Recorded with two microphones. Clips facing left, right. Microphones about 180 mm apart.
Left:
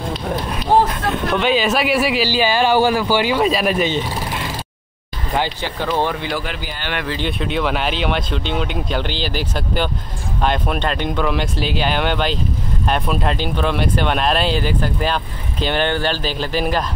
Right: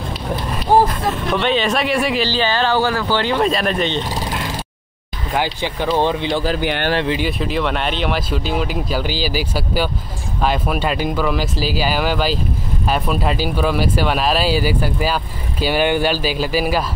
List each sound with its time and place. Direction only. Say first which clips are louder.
0.8 s speech: even; centre (ahead or behind)
5.6 s speech: right 2 dB; 15° right (ahead or behind)
6.6 s speech: right 10 dB; 65° right (ahead or behind)
7.2 s speech: even; centre (ahead or behind)